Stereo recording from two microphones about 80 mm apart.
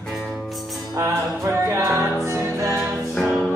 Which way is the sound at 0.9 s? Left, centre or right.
Right.